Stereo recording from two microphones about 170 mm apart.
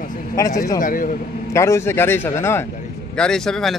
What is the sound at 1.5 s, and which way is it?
Speech, 15° left (ahead or behind).